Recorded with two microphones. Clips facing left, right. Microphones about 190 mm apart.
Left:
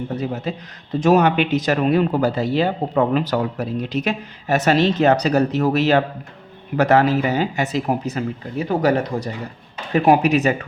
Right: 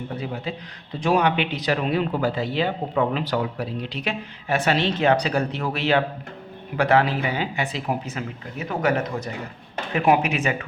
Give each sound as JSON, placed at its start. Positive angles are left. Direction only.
{"t": 0.2, "sound": "speech", "side_deg": 40}